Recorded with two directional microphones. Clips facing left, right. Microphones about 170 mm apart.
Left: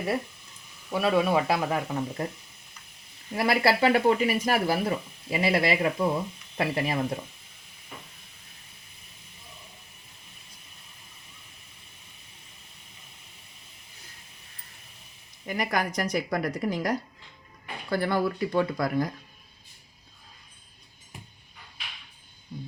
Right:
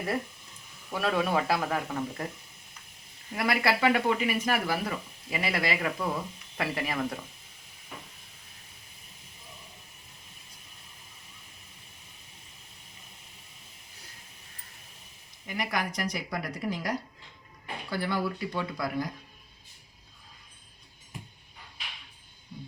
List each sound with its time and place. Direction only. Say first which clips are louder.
0.9 s speech: left 4 dB; 10° left (ahead or behind)
3.3 s speech: left 4 dB; 30° left (ahead or behind)
15.4 s speech: left 4 dB; 45° left (ahead or behind)